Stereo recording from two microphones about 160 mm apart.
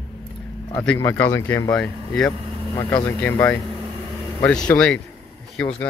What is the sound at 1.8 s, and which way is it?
Speech, 5° left (ahead or behind).